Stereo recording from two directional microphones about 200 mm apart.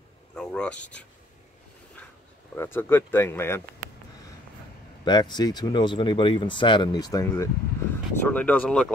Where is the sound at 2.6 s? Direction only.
10° left (ahead or behind).